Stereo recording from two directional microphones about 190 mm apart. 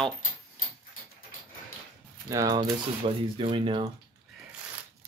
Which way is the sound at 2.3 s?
15° right (ahead or behind).